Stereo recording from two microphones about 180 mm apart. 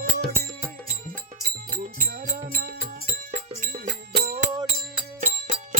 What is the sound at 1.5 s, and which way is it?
Music, 50° right (ahead or behind).